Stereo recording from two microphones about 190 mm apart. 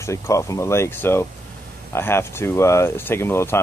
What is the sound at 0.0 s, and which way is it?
Speech, 15° left (ahead or behind).